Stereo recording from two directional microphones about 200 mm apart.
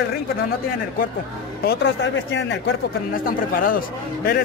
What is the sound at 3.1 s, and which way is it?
Speech, 45° left (ahead or behind).